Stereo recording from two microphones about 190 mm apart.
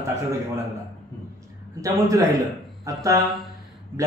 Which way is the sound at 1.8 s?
15° right (ahead or behind).